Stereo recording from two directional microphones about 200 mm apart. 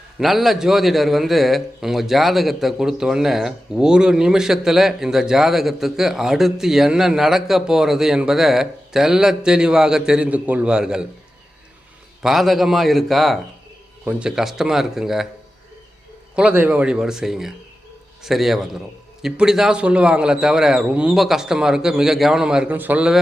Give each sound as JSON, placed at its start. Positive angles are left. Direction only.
{"t": 0.2, "sound": "a man's voice", "side_deg": 0}
{"t": 12.2, "sound": "a man's voice", "side_deg": 0}
{"t": 16.3, "sound": "a man's voice", "side_deg": -5}